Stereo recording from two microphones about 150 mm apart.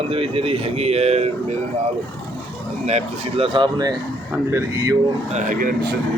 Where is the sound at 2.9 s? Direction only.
40° right (ahead or behind).